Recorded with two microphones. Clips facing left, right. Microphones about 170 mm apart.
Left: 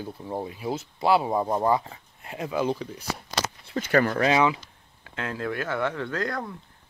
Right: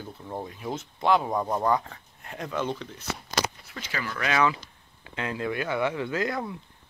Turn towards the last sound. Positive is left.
turn(degrees=-5)  # may be behind; listen again after turning